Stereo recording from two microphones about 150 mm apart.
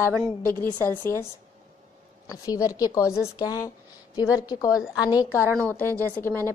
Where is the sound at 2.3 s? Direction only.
25° left (ahead or behind).